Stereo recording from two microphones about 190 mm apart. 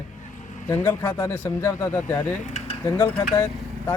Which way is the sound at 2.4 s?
35° left (ahead or behind).